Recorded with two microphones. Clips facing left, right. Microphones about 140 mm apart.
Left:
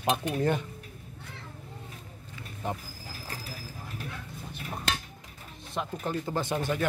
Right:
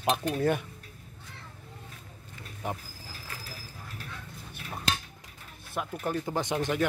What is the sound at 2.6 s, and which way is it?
Speech, 10° right (ahead or behind).